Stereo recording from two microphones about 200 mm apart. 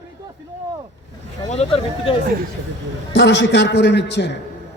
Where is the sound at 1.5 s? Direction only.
30° left (ahead or behind).